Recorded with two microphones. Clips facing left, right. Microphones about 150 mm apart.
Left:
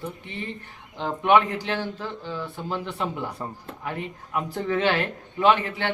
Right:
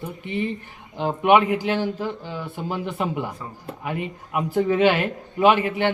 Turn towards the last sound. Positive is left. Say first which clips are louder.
# right 3 dB
turn(degrees=-15)  # may be behind; listen again after turning